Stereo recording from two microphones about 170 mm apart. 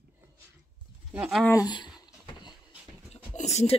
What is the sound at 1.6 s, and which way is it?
Speech, 25° left (ahead or behind).